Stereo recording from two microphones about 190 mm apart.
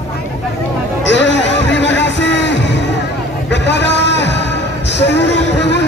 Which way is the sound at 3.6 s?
65° left (ahead or behind).